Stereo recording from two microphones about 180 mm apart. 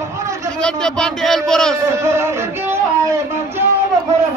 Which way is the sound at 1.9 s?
15° right (ahead or behind).